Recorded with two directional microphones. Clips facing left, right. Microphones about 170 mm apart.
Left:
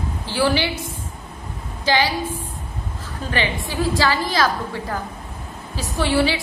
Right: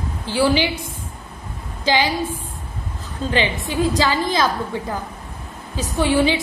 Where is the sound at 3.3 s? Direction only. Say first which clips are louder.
Right 2 dB; 20° right (ahead or behind).